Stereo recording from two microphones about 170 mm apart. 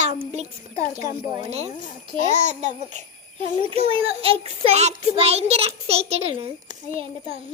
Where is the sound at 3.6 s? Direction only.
35° right (ahead or behind).